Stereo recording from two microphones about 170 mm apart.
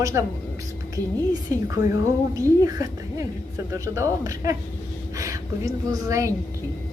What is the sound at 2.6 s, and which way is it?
A woman's voice, 20° right (ahead or behind).